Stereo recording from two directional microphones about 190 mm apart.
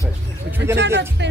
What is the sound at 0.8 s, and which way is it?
Speech, 65° right (ahead or behind).